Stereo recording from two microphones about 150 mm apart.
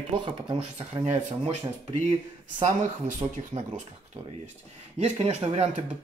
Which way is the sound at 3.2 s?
40° right (ahead or behind).